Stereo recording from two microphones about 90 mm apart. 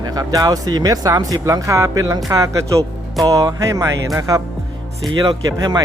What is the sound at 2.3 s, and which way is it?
Music, 35° right (ahead or behind).